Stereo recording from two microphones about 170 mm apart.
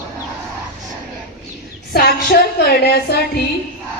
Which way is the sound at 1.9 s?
65° left (ahead or behind).